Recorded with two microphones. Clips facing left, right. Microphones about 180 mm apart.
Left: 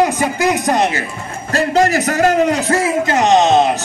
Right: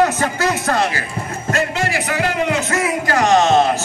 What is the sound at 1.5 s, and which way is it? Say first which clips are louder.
A man's voice: left 7 dB; 40° left (ahead or behind).